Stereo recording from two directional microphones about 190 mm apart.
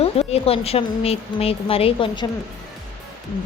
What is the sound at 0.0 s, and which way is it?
Speech, 30° left (ahead or behind).